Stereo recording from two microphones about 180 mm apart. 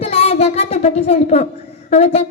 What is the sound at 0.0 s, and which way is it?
Child singing, 35° left (ahead or behind).